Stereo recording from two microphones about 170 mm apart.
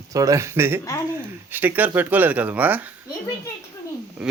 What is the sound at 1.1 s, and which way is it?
Speech, 10° right (ahead or behind).